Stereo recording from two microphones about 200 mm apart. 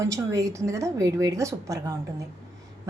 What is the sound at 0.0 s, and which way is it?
A woman's voice, 15° right (ahead or behind).